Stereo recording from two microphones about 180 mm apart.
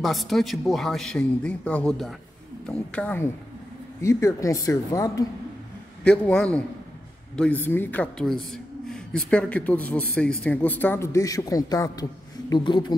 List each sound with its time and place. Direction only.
0.0 s a man's voice: centre (ahead or behind); by 5.2 s 20° left (ahead or behind)
6.0 s a man's voice: 5° left (ahead or behind); by 12.9 s 25° left (ahead or behind)